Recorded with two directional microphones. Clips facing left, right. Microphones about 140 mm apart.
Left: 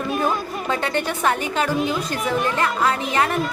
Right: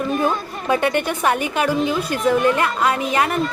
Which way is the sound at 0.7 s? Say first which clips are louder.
Right 5 dB; 15° right (ahead or behind).